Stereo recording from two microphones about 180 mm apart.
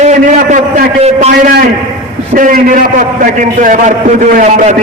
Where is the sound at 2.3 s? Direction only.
45° right (ahead or behind).